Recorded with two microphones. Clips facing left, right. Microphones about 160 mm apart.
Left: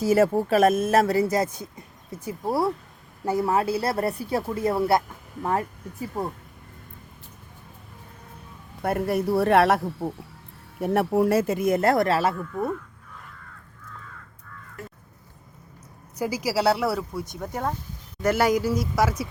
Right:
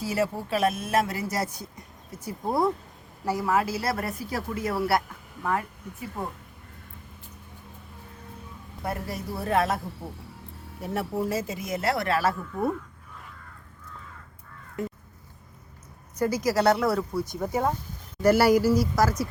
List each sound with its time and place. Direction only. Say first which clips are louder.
0.0 s speech: left 8 dB; 45° left (ahead or behind)
2.2 s speech: left 1 dB; 5° left (ahead or behind)
3.2 s speech: left 3 dB; 25° left (ahead or behind)
8.8 s speech: left 9 dB; 60° left (ahead or behind)
12.3 s speech: even; 5° right (ahead or behind)
16.1 s speech: right 1 dB; 10° left (ahead or behind)
17.4 s speech: right 3 dB; 5° right (ahead or behind)